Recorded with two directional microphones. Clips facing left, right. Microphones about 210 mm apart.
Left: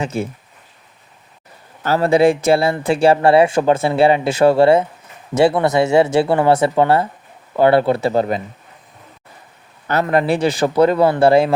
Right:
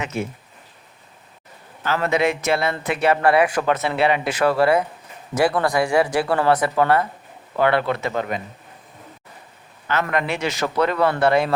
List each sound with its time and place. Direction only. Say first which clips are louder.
0.0 s speech: left 4 dB; 30° left (ahead or behind)
1.8 s speech: left 7 dB; 35° left (ahead or behind)
9.8 s speech: left 6 dB; 35° left (ahead or behind)